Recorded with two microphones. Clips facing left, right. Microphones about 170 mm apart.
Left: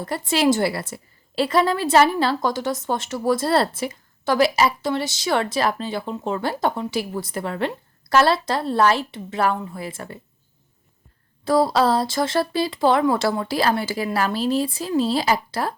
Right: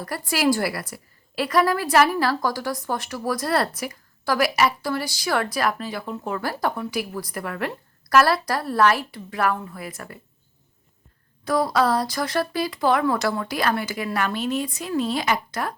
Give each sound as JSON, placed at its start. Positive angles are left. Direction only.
{"t": 0.0, "sound": "a woman's voice", "side_deg": 25}
{"t": 11.4, "sound": "a woman's voice", "side_deg": 30}